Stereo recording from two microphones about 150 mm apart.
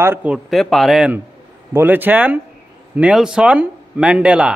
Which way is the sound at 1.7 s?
10° right (ahead or behind).